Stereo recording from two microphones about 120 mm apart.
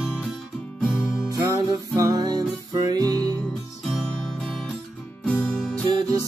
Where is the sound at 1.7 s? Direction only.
30° right (ahead or behind).